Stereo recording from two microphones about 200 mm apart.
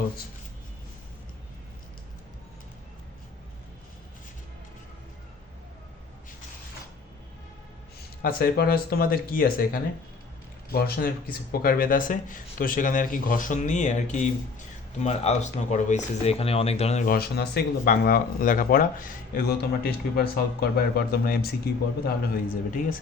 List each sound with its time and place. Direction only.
8.2 s speech: 45° left (ahead or behind)
17.2 s speech: 50° left (ahead or behind)